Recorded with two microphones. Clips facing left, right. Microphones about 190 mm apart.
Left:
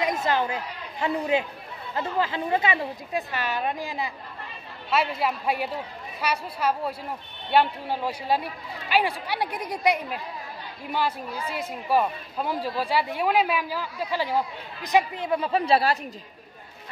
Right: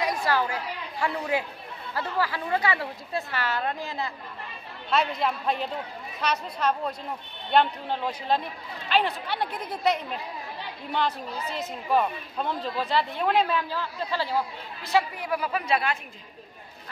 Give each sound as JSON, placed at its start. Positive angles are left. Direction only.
{"t": 0.0, "sound": "a woman's voice", "side_deg": 20}